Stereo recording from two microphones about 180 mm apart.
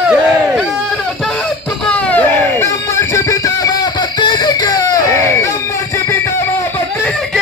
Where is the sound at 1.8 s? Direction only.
5° left (ahead or behind).